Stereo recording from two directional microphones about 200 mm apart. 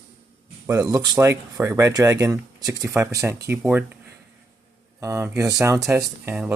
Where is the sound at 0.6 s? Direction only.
15° right (ahead or behind).